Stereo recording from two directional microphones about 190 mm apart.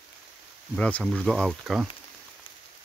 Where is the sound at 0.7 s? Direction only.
5° left (ahead or behind).